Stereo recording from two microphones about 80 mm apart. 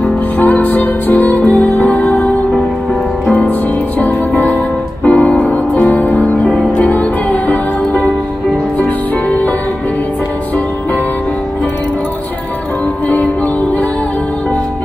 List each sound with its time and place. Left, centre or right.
0.0 s music: centre
5.9 s music: left